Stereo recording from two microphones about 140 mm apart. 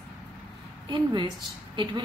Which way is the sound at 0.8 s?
35° right (ahead or behind).